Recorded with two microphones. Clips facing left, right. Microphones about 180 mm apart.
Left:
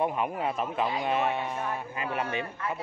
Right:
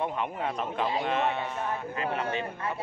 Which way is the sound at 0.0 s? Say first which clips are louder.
Left 2 dB; 10° left (ahead or behind).